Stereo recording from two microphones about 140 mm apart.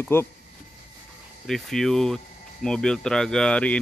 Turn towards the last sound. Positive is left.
turn(degrees=5)  # may be behind; listen again after turning